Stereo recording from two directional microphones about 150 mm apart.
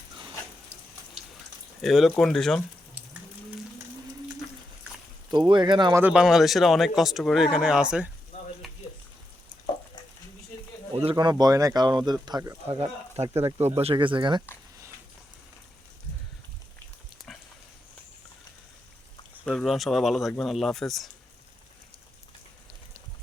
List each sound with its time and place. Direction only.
1.8 s speech: centre (ahead or behind)
5.3 s speech: 30° right (ahead or behind)
5.9 s speech: 10° right (ahead or behind)
8.3 s frying: 50° left (ahead or behind)
10.9 s speech: 30° right (ahead or behind)
12.8 s speech: 40° right (ahead or behind)
19.5 s speech: centre (ahead or behind)